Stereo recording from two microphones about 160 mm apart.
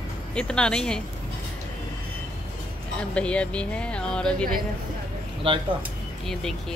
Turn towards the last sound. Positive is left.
turn(degrees=-30)  # may be behind; listen again after turning